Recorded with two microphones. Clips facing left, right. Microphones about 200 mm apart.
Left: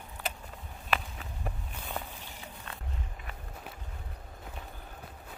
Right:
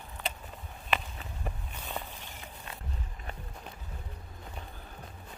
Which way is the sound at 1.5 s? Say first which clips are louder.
Left 1 dB; centre (ahead or behind).